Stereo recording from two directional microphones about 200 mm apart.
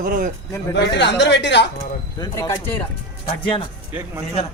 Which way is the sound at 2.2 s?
20° left (ahead or behind).